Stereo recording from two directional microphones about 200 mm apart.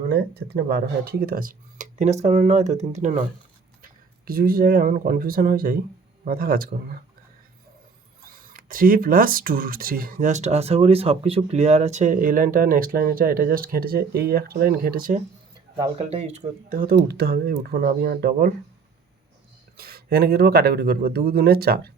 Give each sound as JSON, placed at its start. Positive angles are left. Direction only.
{"t": 0.1, "sound": "speech", "side_deg": -55}
{"t": 8.2, "sound": "speech", "side_deg": -45}
{"t": 15.7, "sound": "speech", "side_deg": -25}
{"t": 16.6, "sound": "speech", "side_deg": -45}
{"t": 19.7, "sound": "speech", "side_deg": -50}